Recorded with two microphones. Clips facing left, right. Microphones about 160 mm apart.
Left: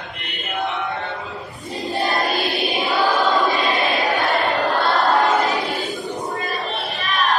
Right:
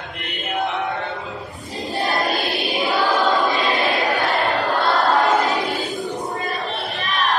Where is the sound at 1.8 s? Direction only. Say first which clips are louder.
Even; centre (ahead or behind).